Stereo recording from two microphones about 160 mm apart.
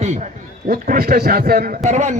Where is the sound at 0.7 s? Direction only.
65° right (ahead or behind).